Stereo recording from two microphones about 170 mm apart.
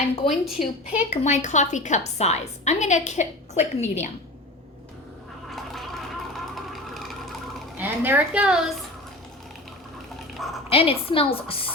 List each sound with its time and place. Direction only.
0.3 s a woman's voice: centre (ahead or behind)
1.1 s a woman's voice: 45° left (ahead or behind)
5.5 s a sound: centre (ahead or behind)
7.8 s a woman's voice: 10° right (ahead or behind)
10.7 s a woman's voice: 35° left (ahead or behind)